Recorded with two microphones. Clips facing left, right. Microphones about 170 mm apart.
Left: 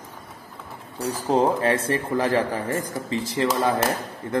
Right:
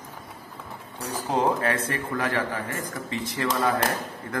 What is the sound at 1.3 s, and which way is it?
A man's voice, 30° left (ahead or behind).